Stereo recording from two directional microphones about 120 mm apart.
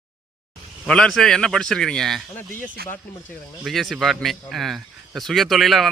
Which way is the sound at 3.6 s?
Centre (ahead or behind).